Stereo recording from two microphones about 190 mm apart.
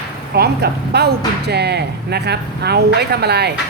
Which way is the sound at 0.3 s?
55° right (ahead or behind).